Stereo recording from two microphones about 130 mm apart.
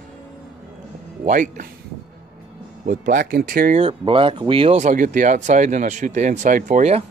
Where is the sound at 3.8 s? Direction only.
45° right (ahead or behind).